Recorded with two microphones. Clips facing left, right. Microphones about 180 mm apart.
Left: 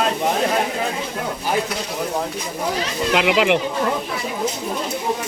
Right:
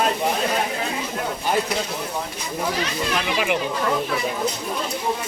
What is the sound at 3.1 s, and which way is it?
Speech, 80° left.